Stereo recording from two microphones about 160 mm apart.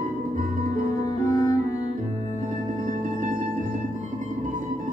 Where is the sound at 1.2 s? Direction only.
25° left (ahead or behind).